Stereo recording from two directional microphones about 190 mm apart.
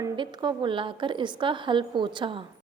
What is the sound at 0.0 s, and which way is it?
A woman's voice, 25° right (ahead or behind).